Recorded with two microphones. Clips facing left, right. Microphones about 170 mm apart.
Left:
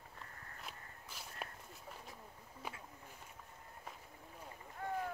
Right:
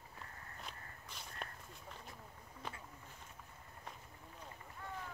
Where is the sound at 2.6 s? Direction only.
10° left (ahead or behind).